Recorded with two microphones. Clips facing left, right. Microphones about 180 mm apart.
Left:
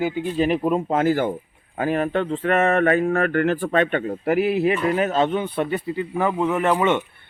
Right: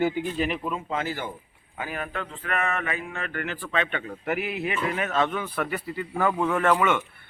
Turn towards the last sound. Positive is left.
turn(degrees=15)  # may be behind; listen again after turning